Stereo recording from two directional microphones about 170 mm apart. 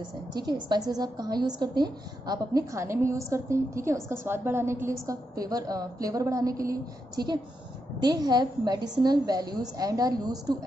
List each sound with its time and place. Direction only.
0.3 s a woman's voice: 25° right (ahead or behind)